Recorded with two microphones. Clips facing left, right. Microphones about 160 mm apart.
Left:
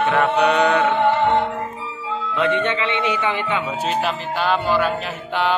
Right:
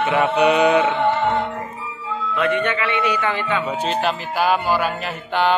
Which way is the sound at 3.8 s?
5° right (ahead or behind).